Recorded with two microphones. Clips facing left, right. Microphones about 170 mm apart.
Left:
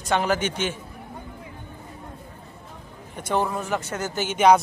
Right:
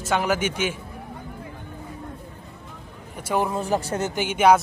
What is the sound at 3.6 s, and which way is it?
Speech, 35° right (ahead or behind).